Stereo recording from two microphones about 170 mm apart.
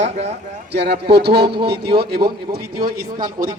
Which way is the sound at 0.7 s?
75° right (ahead or behind).